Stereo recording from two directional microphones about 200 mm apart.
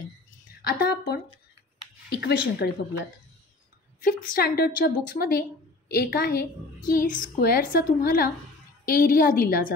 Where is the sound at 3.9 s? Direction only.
45° left (ahead or behind).